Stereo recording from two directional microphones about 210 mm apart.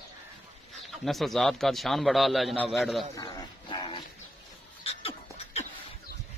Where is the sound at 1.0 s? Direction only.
Centre (ahead or behind).